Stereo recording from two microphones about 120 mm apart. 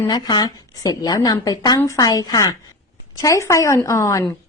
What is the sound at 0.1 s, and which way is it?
A woman's voice, 35° left (ahead or behind).